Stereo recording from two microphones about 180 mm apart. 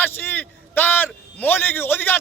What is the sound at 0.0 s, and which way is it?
A man's voice, 10° left (ahead or behind).